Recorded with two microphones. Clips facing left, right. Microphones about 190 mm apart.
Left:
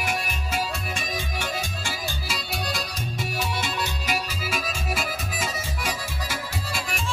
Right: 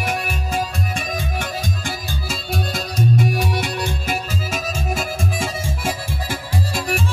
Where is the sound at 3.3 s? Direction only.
50° right (ahead or behind).